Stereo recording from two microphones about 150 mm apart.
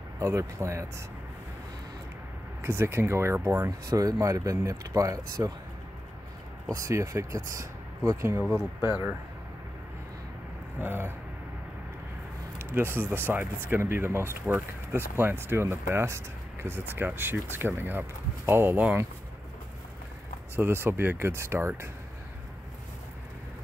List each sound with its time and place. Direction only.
0.2 s speech: 20° right (ahead or behind)
2.6 s speech: 15° right (ahead or behind)
6.7 s speech: 20° right (ahead or behind)
10.8 s speech: 15° right (ahead or behind)
12.7 s speech: 15° right (ahead or behind)
20.5 s speech: 15° right (ahead or behind)